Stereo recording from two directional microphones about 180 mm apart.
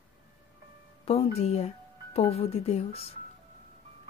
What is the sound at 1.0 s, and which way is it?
Speech, 35° left (ahead or behind).